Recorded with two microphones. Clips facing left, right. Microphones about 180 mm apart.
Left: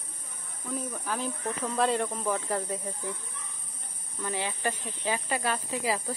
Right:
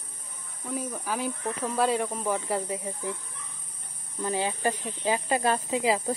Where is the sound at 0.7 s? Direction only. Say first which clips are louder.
Right 2 dB; 10° right (ahead or behind).